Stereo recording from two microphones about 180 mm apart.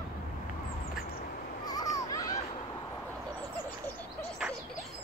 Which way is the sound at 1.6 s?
20° left (ahead or behind).